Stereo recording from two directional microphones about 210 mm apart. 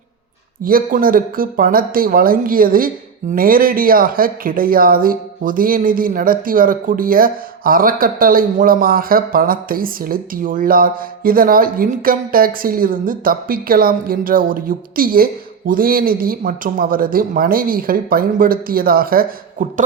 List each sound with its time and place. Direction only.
0.6 s speech: 40° right (ahead or behind)